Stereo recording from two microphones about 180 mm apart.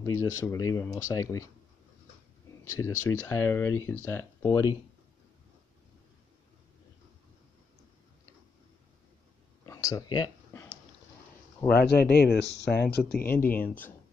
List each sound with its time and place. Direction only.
0.0 s speech: 15° left (ahead or behind)
2.7 s speech: 15° left (ahead or behind)
9.7 s speech: 20° left (ahead or behind)
11.6 s speech: 60° left (ahead or behind)